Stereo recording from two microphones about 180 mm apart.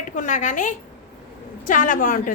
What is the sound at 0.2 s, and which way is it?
A woman's voice, 45° left (ahead or behind).